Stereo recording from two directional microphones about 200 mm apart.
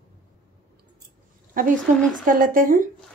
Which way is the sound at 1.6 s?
45° right (ahead or behind).